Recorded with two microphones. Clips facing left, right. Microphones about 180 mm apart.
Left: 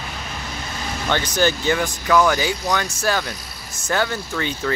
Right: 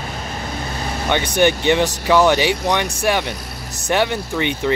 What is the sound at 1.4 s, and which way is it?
Speech, 20° right (ahead or behind).